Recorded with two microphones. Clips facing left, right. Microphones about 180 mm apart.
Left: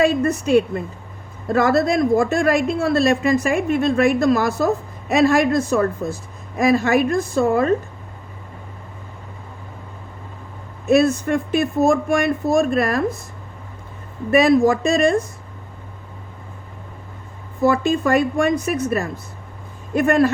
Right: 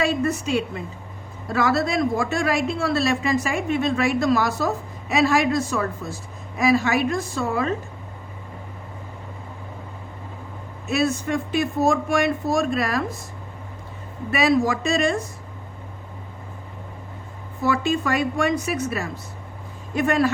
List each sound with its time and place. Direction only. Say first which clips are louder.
0.0 s a woman's voice: left 5 dB; 55° left (ahead or behind)
10.8 s a woman's voice: left 7 dB; 55° left (ahead or behind)
14.3 s a woman's voice: left 6 dB; 50° left (ahead or behind)
17.6 s a woman's voice: left 5 dB; 50° left (ahead or behind)